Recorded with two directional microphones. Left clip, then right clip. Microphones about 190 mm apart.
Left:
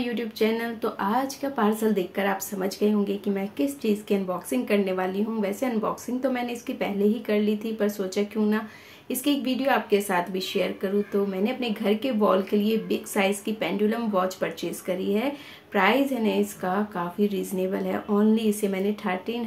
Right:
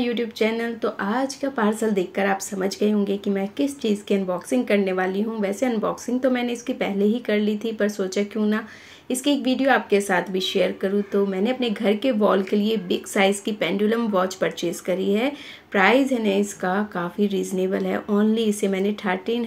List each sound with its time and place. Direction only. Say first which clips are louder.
0.0 s speech: right 3 dB; 10° right (ahead or behind)